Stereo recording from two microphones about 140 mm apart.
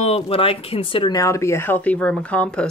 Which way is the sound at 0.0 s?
45° left (ahead or behind).